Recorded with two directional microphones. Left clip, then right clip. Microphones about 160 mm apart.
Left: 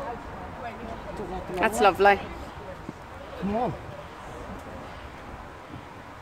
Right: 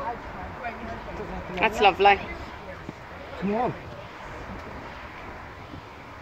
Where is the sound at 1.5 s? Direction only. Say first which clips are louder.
Right 1 dB; 20° left (ahead or behind).